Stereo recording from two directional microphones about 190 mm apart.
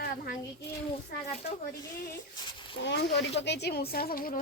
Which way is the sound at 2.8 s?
70° left (ahead or behind).